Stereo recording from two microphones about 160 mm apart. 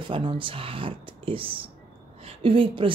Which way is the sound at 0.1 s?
30° right (ahead or behind).